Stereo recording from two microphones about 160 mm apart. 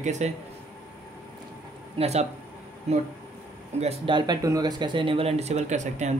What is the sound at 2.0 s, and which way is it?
Speech, 40° right (ahead or behind).